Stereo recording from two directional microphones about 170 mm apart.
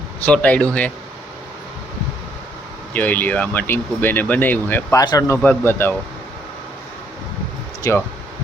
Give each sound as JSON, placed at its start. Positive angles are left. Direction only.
{"t": 0.3, "sound": "speech", "side_deg": 10}
{"t": 2.9, "sound": "speech", "side_deg": 10}
{"t": 7.9, "sound": "speech", "side_deg": 15}